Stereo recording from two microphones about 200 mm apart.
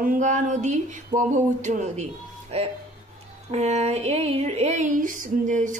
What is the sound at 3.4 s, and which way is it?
A woman's voice, 35° right (ahead or behind).